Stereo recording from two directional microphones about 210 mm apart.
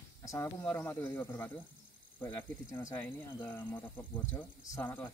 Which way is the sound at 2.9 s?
10° left (ahead or behind).